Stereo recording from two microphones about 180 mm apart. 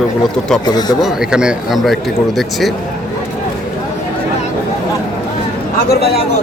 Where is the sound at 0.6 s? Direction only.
20° left (ahead or behind).